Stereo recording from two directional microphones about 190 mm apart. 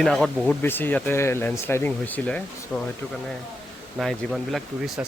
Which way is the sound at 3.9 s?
Centre (ahead or behind).